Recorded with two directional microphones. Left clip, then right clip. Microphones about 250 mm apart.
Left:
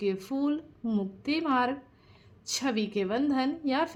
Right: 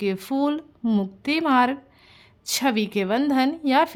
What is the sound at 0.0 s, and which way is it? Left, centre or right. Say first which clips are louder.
Speech: right 6 dB; right.